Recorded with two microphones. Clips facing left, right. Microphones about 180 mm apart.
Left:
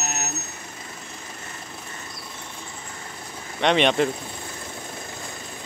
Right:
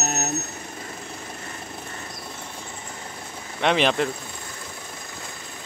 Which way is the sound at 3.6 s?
Centre (ahead or behind).